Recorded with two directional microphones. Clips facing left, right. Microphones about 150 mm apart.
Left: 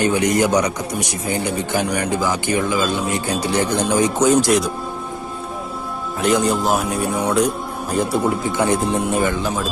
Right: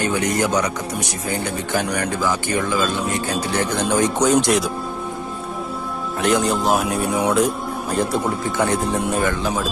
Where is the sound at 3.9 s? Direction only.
5° left (ahead or behind).